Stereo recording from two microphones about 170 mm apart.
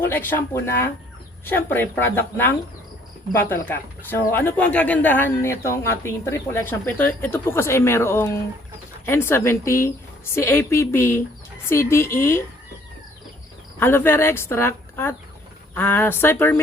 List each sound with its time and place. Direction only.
0.0 s speech: 10° left (ahead or behind)
13.7 s speech: 15° left (ahead or behind)